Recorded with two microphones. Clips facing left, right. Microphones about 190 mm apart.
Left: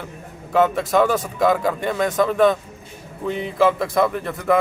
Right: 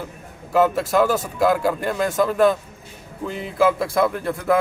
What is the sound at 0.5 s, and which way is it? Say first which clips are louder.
Speech: even; 5° right (ahead or behind).